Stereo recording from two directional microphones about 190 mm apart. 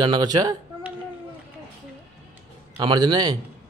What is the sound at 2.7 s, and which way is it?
Speech, 25° right (ahead or behind).